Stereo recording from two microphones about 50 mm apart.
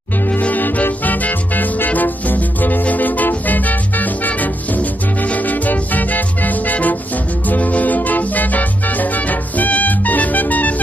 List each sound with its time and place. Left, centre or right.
0.3 s music: left